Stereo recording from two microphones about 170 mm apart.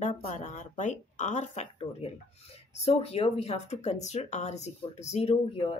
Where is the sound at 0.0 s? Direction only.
45° left (ahead or behind).